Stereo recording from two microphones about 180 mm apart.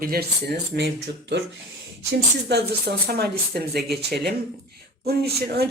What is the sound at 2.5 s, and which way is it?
Speech, 65° right (ahead or behind).